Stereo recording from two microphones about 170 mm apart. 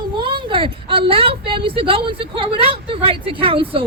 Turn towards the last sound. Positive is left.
turn(degrees=-35)  # may be behind; listen again after turning